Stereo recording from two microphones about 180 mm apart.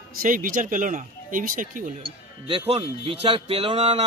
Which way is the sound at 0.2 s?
50° right (ahead or behind).